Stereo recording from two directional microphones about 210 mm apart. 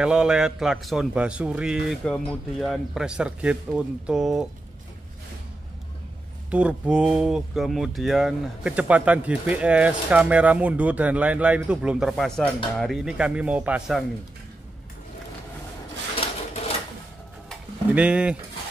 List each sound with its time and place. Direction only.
0.0 s speech: 5° right (ahead or behind)
6.5 s speech: 5° right (ahead or behind)
16.2 s a sound: 30° left (ahead or behind)
17.5 s pigeon: 5° right (ahead or behind)